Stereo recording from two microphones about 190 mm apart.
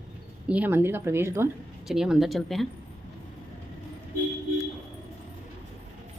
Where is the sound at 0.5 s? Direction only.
10° right (ahead or behind).